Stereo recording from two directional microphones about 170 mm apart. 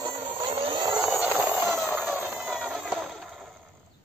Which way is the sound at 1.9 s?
10° right (ahead or behind).